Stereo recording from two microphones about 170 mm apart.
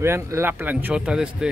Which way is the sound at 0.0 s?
15° right (ahead or behind).